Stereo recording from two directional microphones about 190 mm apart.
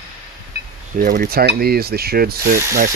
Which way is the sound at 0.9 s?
45° right (ahead or behind).